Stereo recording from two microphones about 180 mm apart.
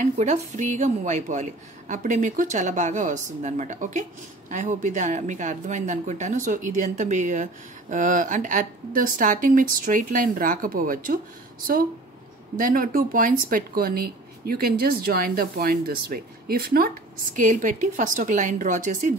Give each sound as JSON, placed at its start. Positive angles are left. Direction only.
{"t": 0.0, "sound": "speech", "side_deg": -40}
{"t": 12.5, "sound": "speech", "side_deg": -50}